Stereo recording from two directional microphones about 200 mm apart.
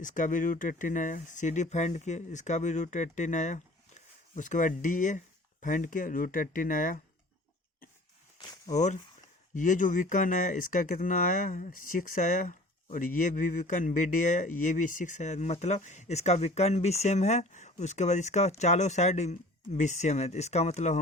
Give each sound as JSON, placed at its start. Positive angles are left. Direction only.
{"t": 0.0, "sound": "speech", "side_deg": 40}
{"t": 8.7, "sound": "speech", "side_deg": 35}